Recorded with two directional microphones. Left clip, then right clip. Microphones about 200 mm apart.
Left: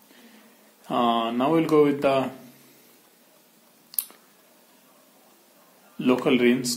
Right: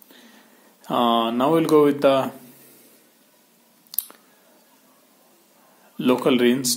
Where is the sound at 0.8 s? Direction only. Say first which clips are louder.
Right 3 dB; 35° right (ahead or behind).